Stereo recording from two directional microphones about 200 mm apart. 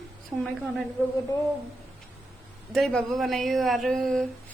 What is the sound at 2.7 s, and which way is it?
A woman's voice, centre (ahead or behind).